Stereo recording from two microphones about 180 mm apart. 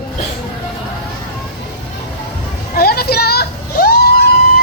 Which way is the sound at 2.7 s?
60° left (ahead or behind).